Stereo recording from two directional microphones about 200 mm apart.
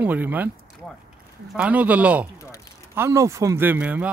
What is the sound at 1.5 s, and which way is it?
Speech, 5° right (ahead or behind).